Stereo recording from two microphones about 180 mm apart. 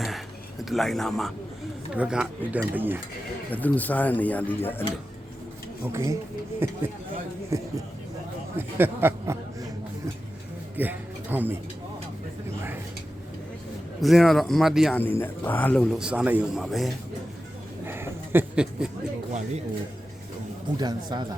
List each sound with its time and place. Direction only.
0.6 s a man's voice: centre (ahead or behind)
3.5 s speech: 10° left (ahead or behind)
5.9 s a man's voice: 15° right (ahead or behind)
10.8 s a sound: 10° right (ahead or behind)
14.0 s a man's voice: centre (ahead or behind)
14.9 s a man's voice: 10° left (ahead or behind)
17.8 s a sound: 10° right (ahead or behind)
20.7 s speech: 25° right (ahead or behind)